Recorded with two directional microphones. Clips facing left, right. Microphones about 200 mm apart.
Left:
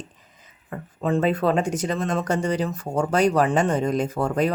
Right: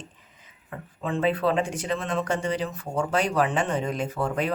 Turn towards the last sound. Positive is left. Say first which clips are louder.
# left 4 dB
turn(degrees=40)  # may be behind; listen again after turning